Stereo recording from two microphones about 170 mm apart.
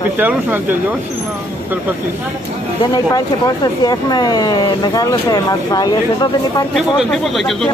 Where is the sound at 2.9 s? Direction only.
25° left (ahead or behind).